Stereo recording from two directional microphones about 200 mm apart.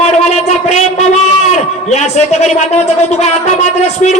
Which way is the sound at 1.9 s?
35° left (ahead or behind).